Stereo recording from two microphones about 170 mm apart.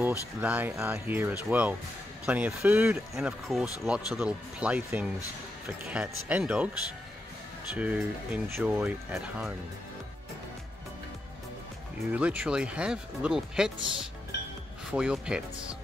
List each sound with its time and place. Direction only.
0.0 s speech: 10° right (ahead or behind)
7.7 s speech: 10° right (ahead or behind)
12.1 s speech: 10° right (ahead or behind)
14.9 s speech: 5° right (ahead or behind)